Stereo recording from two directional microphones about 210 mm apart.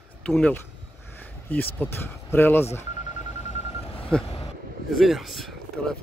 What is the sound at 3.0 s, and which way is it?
Telephone dialing, 35° left (ahead or behind).